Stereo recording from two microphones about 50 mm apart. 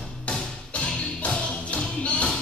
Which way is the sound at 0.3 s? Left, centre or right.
Left.